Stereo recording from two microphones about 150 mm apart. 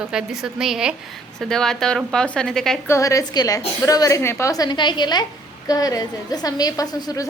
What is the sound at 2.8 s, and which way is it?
A woman's voice, 20° left (ahead or behind).